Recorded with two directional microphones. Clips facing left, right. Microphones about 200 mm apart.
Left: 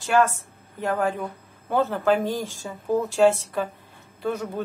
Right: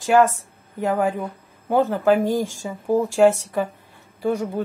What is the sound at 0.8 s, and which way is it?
A woman's voice, 15° right (ahead or behind).